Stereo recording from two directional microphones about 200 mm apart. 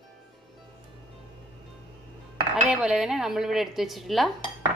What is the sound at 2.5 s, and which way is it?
A woman's voice, 5° right (ahead or behind).